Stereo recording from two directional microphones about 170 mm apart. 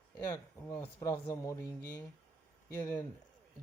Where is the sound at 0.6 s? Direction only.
15° left (ahead or behind).